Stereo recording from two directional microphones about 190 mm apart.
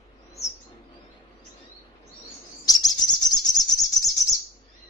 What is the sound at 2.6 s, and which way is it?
Bird, 20° left (ahead or behind).